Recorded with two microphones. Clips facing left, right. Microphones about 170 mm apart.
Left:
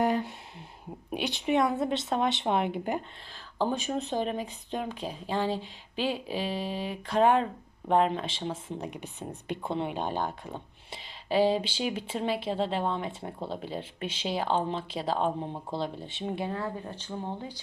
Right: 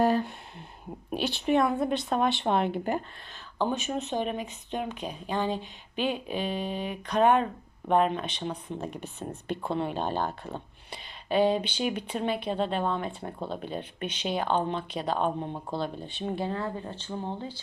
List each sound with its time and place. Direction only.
0.0 s a sound: 20° left (ahead or behind)
1.1 s speech: 15° left (ahead or behind)
3.6 s speech: 35° left (ahead or behind)
6.1 s speech: 20° right (ahead or behind)
6.3 s speech: 30° left (ahead or behind)
8.9 s speech: 15° left (ahead or behind)
11.3 s speech: 30° left (ahead or behind)
16.5 s speech: 10° left (ahead or behind)